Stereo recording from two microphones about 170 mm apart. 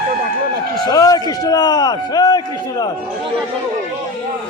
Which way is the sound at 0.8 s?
20° left (ahead or behind).